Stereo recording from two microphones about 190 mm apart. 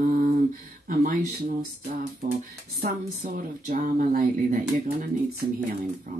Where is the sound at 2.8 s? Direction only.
50° right (ahead or behind).